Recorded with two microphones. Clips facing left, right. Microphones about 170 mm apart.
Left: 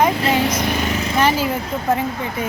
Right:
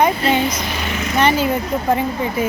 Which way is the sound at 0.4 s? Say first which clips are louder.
Left 2 dB; 55° left (ahead or behind).